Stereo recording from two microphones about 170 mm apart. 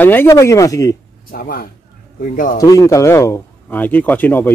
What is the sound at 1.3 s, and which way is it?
A man's voice, 60° left (ahead or behind).